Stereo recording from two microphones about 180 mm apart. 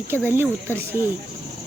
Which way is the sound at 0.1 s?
10° right (ahead or behind).